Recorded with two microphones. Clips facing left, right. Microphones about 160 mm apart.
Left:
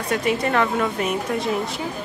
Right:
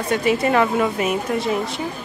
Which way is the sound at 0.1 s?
Centre (ahead or behind).